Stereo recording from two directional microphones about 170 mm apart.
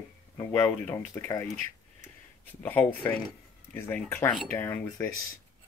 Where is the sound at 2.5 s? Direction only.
10° left (ahead or behind).